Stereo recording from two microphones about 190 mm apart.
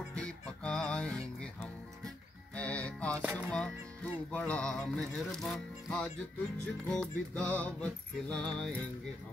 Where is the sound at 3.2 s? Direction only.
10° right (ahead or behind).